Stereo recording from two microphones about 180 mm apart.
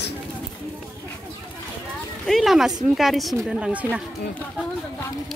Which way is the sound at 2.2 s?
Centre (ahead or behind).